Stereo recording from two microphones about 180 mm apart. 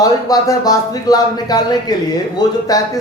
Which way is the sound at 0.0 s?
20° left (ahead or behind).